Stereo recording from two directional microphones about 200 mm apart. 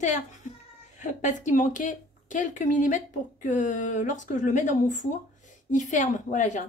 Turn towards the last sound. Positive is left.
turn(degrees=35)  # may be behind; listen again after turning